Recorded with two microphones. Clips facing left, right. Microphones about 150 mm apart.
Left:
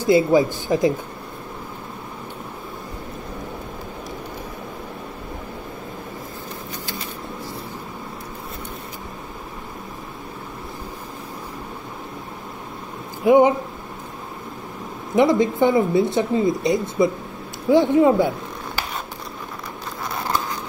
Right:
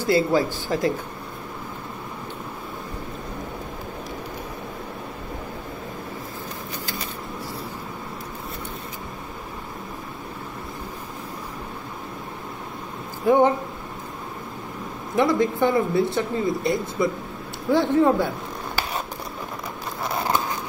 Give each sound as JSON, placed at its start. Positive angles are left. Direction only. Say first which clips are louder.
{"t": 0.0, "sound": "speech", "louder": "left 4 dB", "side_deg": 15}
{"t": 13.2, "sound": "speech", "louder": "left 4 dB", "side_deg": 15}
{"t": 15.1, "sound": "speech", "louder": "left 4 dB", "side_deg": 20}